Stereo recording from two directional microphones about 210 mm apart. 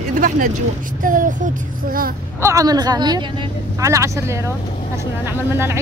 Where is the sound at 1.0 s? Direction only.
40° right (ahead or behind).